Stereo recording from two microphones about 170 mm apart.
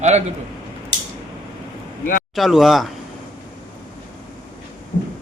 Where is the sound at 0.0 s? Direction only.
40° right (ahead or behind).